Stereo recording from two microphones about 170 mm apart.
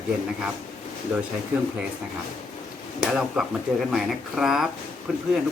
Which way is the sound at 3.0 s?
5° right (ahead or behind).